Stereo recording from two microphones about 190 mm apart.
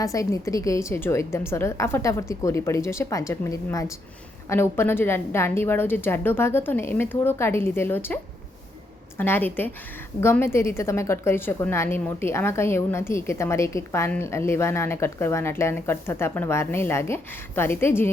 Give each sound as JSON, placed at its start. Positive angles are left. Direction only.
{"t": 0.0, "sound": "a woman's voice", "side_deg": 15}